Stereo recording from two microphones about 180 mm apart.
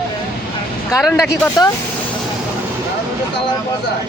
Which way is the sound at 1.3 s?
15° left (ahead or behind).